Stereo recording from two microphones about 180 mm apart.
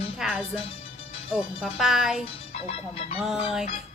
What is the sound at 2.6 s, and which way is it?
Speech, 35° left (ahead or behind).